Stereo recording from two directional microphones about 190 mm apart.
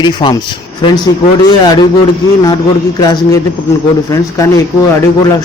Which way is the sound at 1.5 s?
20° left (ahead or behind).